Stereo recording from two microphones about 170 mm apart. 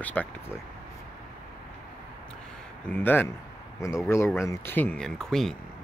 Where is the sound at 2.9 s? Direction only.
10° left (ahead or behind).